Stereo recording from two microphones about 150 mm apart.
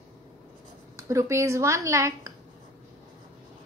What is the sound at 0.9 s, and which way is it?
A woman's voice, 20° right (ahead or behind).